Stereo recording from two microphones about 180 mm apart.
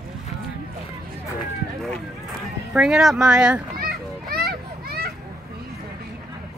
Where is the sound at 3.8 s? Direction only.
55° right (ahead or behind).